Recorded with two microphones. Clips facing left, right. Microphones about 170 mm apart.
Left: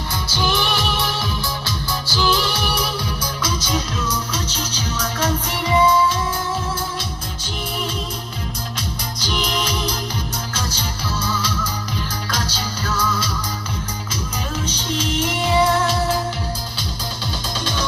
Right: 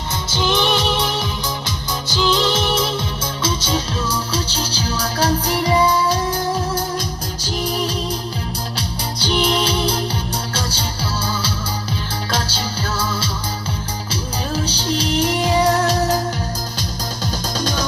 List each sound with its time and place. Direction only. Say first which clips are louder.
0.3 s music: right 4 dB; 20° right (ahead or behind); by 6.8 s 40° right (ahead or behind)
8.7 s music: right 3 dB; 30° right (ahead or behind)
17.6 s music: right 3 dB; 40° right (ahead or behind)